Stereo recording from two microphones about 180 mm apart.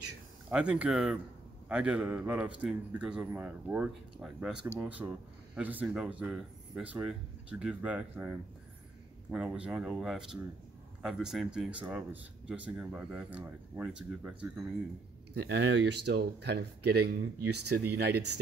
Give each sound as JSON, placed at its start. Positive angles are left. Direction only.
{"t": 0.5, "sound": "a man's voice", "side_deg": -5}
{"t": 15.3, "sound": "speech", "side_deg": -75}